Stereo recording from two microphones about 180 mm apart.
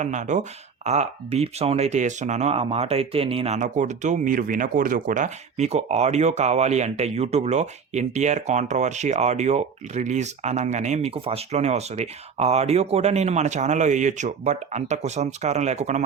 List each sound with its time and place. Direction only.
0.0 s speech: 40° right (ahead or behind)